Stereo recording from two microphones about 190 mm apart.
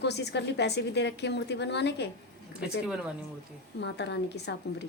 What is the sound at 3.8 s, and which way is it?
A woman's voice, 65° left (ahead or behind).